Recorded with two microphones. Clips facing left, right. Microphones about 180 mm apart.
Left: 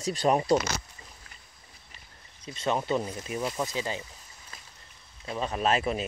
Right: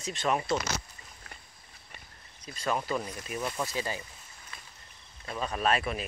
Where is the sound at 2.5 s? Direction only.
25° left (ahead or behind).